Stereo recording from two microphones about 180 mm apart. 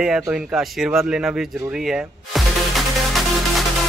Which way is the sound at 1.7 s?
5° right (ahead or behind).